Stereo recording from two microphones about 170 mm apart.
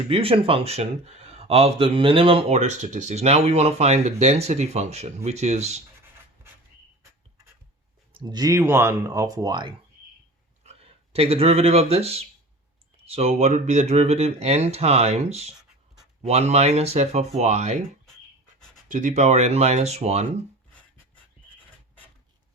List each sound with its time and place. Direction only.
0.1 s speech: 35° right (ahead or behind)
8.1 s speech: 25° right (ahead or behind)
10.6 s speech: 35° right (ahead or behind)
18.9 s speech: 45° right (ahead or behind)